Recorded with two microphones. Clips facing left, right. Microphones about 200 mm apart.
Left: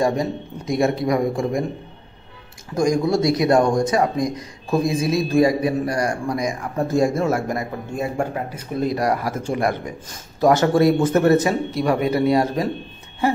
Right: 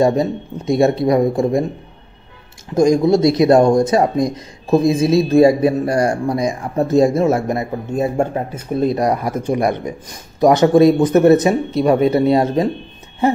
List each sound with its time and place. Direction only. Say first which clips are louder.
0.0 s speech: right 5 dB; 25° right (ahead or behind)
2.7 s speech: right 6 dB; 25° right (ahead or behind)